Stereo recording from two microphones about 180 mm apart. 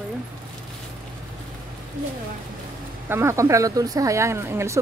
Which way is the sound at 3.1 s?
15° right (ahead or behind).